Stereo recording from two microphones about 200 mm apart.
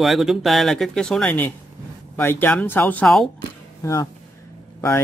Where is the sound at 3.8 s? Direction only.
15° left (ahead or behind).